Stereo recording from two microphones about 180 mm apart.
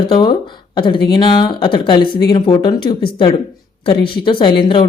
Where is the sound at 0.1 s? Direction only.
25° left (ahead or behind).